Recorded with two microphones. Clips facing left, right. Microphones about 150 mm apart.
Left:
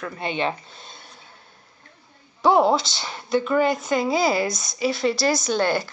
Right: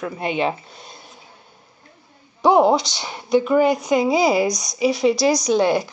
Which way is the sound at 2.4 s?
Centre (ahead or behind).